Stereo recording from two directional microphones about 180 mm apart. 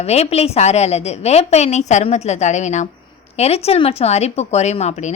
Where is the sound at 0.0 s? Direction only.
35° left (ahead or behind).